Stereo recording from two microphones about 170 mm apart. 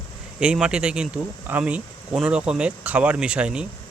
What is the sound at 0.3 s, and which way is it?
Speech, 5° right (ahead or behind).